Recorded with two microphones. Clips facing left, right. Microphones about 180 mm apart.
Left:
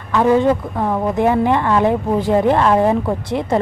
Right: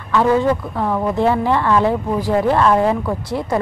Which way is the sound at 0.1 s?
20° left (ahead or behind).